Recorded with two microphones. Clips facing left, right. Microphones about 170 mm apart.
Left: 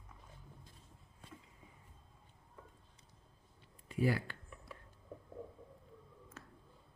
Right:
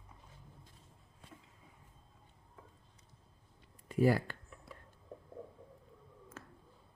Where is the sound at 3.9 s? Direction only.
45° right (ahead or behind).